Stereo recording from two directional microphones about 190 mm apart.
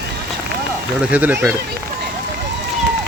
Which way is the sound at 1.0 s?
5° right (ahead or behind).